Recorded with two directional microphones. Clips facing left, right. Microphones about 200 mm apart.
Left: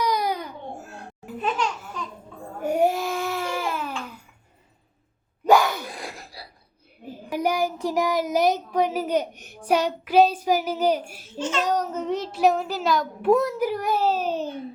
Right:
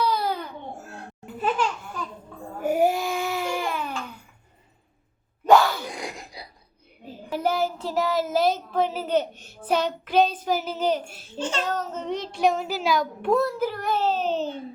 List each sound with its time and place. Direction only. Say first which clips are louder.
0.0 s babbling: even; 15° left (ahead or behind)
2.6 s baby cry: even; centre (ahead or behind)
5.5 s gasp: right 1 dB; 15° left (ahead or behind)
5.9 s gasp: right 2 dB; 20° right (ahead or behind)
7.0 s a child's voice: left 1 dB; 15° left (ahead or behind)
11.3 s a child's voice: left 2 dB; 30° right (ahead or behind)
11.6 s a child's voice: left 4 dB; 15° left (ahead or behind); by 13.3 s centre (ahead or behind)
13.3 s a child's voice: left 2 dB; 15° left (ahead or behind)